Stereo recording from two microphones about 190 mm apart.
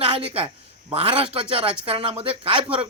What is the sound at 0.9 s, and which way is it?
A man's voice, 30° right (ahead or behind).